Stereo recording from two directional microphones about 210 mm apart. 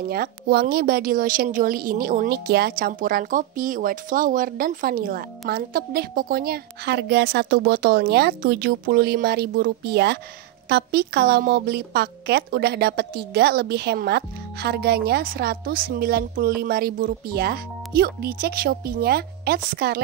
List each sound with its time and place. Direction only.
0.1 s a woman's voice: 45° right (ahead or behind)